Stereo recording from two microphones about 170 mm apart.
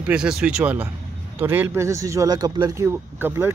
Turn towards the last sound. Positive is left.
turn(degrees=-15)  # may be behind; listen again after turning